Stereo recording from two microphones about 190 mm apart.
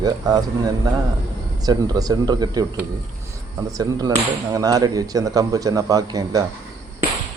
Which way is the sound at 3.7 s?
20° right (ahead or behind).